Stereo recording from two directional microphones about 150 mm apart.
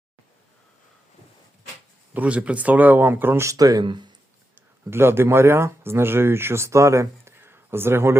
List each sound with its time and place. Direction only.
2.1 s speech: 10° right (ahead or behind); by 4.1 s 30° right (ahead or behind)
4.5 s speech: 15° right (ahead or behind)